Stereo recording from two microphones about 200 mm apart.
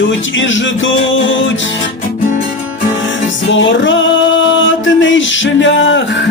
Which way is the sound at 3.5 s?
70° left (ahead or behind).